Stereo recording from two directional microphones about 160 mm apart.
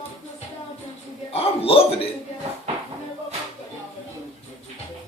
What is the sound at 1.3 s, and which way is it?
Speech, 40° left (ahead or behind).